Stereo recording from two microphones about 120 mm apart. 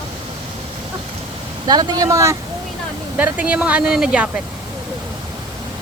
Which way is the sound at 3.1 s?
15° right (ahead or behind).